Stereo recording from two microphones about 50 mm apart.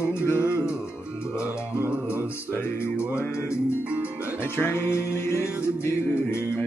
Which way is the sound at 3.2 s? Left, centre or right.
Left.